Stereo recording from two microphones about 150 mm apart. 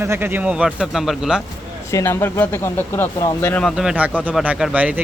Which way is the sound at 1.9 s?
20° left (ahead or behind).